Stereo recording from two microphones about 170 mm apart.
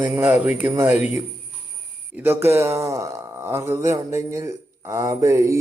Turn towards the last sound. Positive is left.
turn(degrees=-15)  # may be behind; listen again after turning